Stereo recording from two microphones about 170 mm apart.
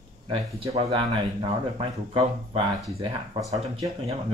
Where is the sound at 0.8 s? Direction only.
30° right (ahead or behind).